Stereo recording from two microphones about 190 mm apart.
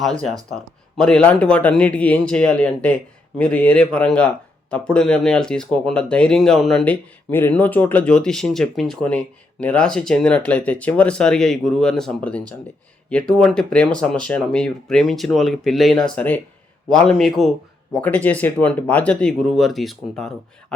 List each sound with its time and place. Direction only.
0.0 s a man's voice: 5° left (ahead or behind)